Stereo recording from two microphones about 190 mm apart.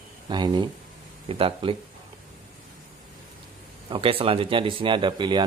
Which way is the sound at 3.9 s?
30° right (ahead or behind).